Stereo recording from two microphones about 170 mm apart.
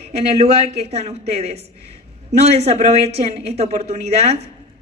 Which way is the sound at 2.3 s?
40° right (ahead or behind).